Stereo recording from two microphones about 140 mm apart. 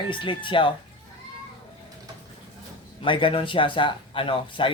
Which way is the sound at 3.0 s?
40° left (ahead or behind).